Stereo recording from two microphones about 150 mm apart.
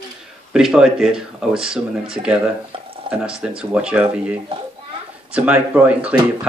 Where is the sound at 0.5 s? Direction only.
5° right (ahead or behind).